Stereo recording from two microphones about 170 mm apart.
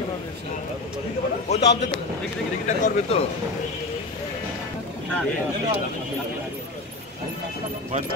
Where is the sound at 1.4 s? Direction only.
40° left (ahead or behind).